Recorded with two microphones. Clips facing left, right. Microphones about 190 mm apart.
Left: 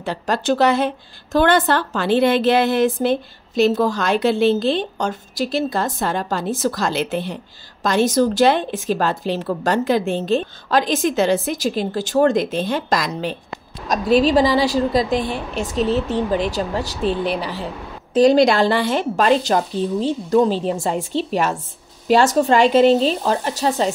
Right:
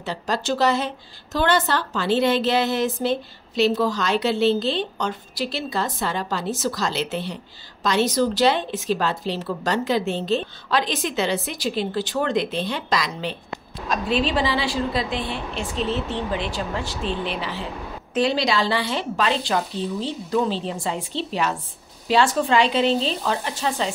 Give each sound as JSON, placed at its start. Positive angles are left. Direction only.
{"t": 0.0, "sound": "a woman's voice", "side_deg": 55}